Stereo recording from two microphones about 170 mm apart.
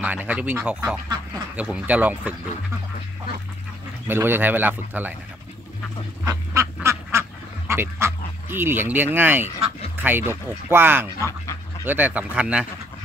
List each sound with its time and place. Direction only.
0.0 s speech: 10° right (ahead or behind)
4.1 s speech: 15° right (ahead or behind)
6.2 s duck: 15° right (ahead or behind)
10.0 s speech: 15° right (ahead or behind)
11.1 s speech: 15° left (ahead or behind)
11.8 s speech: 10° right (ahead or behind)